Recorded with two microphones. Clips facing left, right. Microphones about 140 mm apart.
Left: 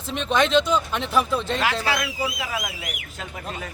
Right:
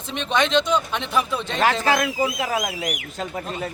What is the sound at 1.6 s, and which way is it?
Speech, 40° right (ahead or behind).